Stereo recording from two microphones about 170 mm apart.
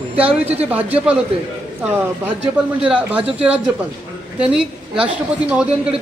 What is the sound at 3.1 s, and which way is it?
A woman's voice, 5° right (ahead or behind).